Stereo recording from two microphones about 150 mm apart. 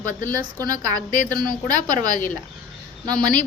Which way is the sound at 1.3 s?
30° right (ahead or behind).